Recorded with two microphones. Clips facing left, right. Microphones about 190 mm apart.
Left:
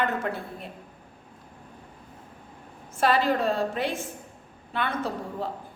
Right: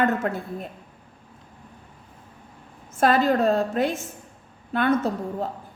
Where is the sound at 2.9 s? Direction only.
45° right (ahead or behind).